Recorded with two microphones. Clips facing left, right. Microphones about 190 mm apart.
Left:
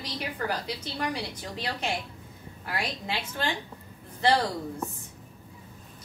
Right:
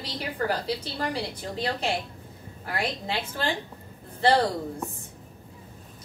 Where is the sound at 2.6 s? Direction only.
50° right (ahead or behind).